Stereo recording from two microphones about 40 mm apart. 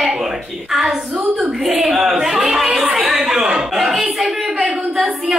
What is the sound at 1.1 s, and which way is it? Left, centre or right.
Speech, right.